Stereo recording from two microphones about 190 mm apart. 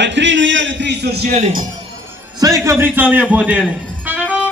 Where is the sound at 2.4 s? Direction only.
15° right (ahead or behind).